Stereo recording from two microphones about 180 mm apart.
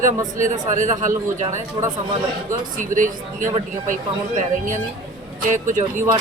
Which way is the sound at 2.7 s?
45° right (ahead or behind).